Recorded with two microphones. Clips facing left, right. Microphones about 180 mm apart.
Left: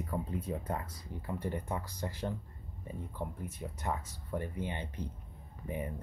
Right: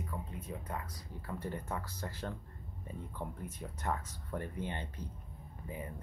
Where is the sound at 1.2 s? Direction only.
20° left (ahead or behind).